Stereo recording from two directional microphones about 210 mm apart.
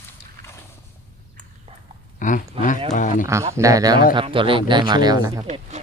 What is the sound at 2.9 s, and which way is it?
Speech, 40° left (ahead or behind).